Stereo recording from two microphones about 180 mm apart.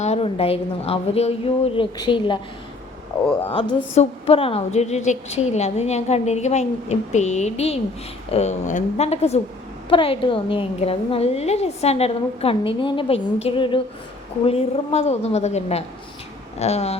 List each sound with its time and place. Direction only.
0.0 s a woman's voice: 35° left (ahead or behind)
3.5 s a woman's voice: 30° left (ahead or behind)